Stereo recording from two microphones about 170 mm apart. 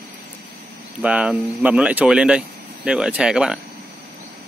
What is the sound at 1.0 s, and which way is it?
Speech, 5° right (ahead or behind).